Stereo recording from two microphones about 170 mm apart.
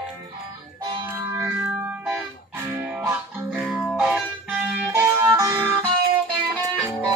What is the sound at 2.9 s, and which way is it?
Music, 10° right (ahead or behind).